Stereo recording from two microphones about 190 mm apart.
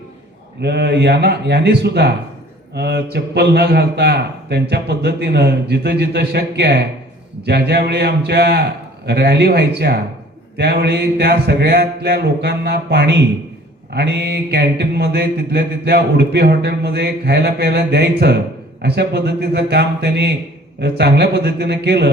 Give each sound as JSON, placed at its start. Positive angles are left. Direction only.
{"t": 0.6, "sound": "mantra", "side_deg": -60}